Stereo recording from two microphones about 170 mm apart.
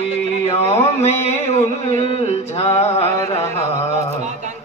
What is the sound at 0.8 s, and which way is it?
Music, 35° left (ahead or behind).